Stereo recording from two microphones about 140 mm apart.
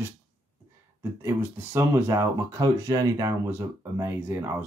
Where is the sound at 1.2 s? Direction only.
15° right (ahead or behind).